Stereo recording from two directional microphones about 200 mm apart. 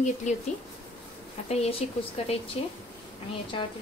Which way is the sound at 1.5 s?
30° left (ahead or behind).